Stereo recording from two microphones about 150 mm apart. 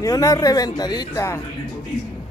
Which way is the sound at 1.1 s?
15° left (ahead or behind).